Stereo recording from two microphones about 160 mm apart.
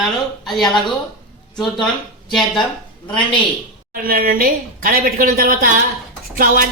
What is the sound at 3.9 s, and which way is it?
A woman's voice, 65° right (ahead or behind).